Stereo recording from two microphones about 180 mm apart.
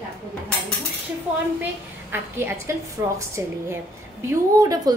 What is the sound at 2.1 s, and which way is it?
A woman's voice, 15° right (ahead or behind).